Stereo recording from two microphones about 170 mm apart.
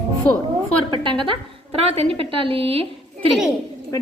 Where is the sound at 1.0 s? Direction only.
30° right (ahead or behind).